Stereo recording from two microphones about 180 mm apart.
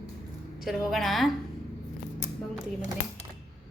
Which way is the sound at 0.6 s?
Centre (ahead or behind).